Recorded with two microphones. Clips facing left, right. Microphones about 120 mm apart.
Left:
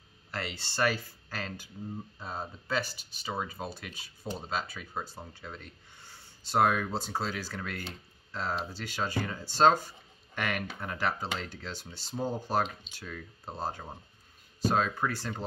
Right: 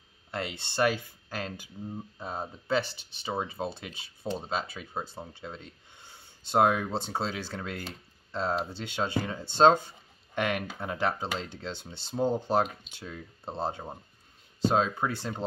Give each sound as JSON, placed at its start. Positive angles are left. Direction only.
{"t": 0.3, "sound": "speech", "side_deg": -20}